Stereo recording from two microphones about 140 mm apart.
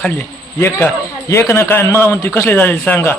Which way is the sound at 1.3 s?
20° left (ahead or behind).